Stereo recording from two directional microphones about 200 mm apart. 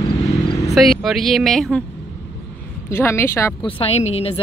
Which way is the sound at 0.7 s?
Centre (ahead or behind).